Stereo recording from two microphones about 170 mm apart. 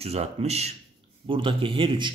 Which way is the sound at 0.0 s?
40° right (ahead or behind).